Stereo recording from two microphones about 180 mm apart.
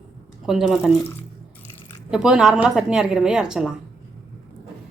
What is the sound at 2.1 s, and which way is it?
Speech, 5° right (ahead or behind).